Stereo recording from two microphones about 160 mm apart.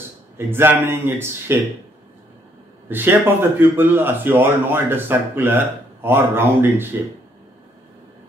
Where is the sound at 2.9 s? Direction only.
15° right (ahead or behind).